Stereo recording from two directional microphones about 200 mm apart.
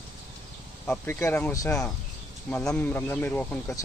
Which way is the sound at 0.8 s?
5° left (ahead or behind).